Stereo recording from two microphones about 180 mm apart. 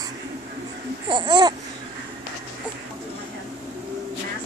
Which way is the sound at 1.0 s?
25° right (ahead or behind).